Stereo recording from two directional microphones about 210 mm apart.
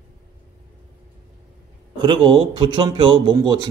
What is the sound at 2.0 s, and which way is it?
Speech, 20° right (ahead or behind).